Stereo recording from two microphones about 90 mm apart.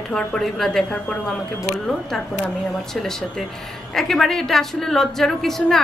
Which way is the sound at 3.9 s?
5° left (ahead or behind).